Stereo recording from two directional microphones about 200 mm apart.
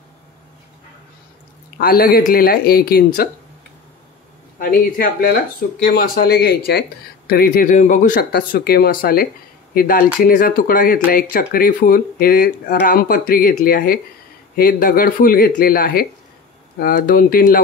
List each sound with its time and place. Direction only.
1.8 s speech: 50° left (ahead or behind)
4.6 s speech: 45° left (ahead or behind)